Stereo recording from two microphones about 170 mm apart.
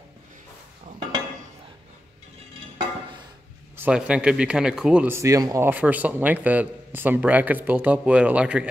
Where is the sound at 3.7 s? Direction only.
10° right (ahead or behind).